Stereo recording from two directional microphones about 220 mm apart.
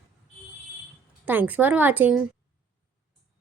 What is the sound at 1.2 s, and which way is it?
Speech, 10° right (ahead or behind).